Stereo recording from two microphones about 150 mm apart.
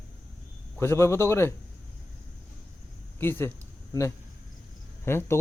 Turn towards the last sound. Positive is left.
turn(degrees=15)  # may be behind; listen again after turning